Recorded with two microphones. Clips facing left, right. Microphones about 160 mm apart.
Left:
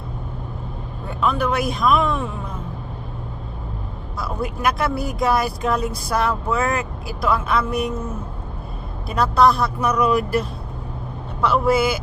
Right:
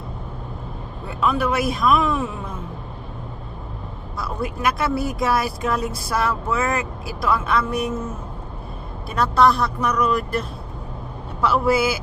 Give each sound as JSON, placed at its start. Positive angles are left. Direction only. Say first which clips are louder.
{"t": 1.0, "sound": "speech", "louder": "even", "side_deg": -5}
{"t": 4.2, "sound": "speech", "louder": "left 1 dB", "side_deg": 0}
{"t": 9.0, "sound": "speech", "louder": "left 1 dB", "side_deg": 0}
{"t": 11.4, "sound": "speech", "louder": "left 1 dB", "side_deg": -5}